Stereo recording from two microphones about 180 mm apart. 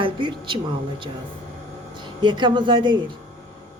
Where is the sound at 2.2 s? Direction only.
25° right (ahead or behind).